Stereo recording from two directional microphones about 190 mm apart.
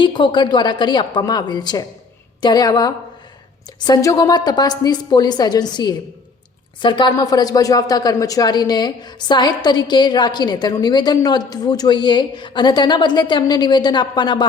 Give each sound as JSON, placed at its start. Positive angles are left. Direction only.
{"t": 0.0, "sound": "speech", "side_deg": 25}